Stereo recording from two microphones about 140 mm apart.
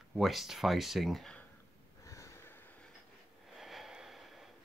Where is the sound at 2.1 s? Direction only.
20° left (ahead or behind).